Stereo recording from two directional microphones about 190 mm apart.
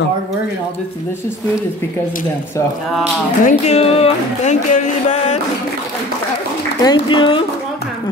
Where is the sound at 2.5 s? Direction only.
15° left (ahead or behind).